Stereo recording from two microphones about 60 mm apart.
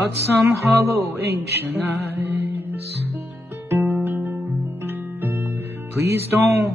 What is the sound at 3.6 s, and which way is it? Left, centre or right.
Music, right.